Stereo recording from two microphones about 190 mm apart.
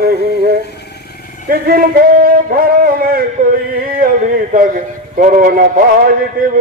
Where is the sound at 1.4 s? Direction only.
50° right (ahead or behind).